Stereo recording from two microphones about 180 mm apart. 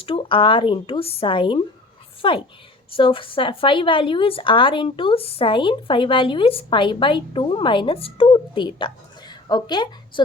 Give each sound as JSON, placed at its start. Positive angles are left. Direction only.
{"t": 0.0, "sound": "a woman's voice", "side_deg": 30}